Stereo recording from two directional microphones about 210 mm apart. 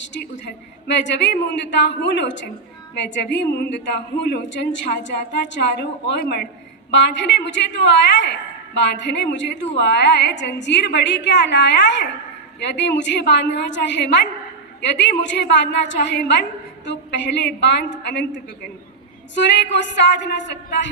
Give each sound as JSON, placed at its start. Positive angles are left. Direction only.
{"t": 0.0, "sound": "a woman's voice", "side_deg": 55}